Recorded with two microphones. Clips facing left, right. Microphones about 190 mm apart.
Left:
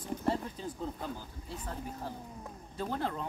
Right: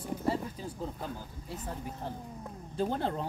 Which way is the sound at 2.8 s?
30° right (ahead or behind).